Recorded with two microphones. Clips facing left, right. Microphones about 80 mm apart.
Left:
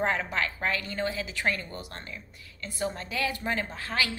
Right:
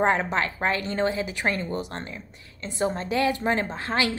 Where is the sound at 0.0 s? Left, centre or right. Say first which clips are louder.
Right 6 dB; right.